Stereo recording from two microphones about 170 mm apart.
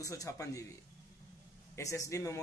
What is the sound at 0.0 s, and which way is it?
Speech, 20° left (ahead or behind).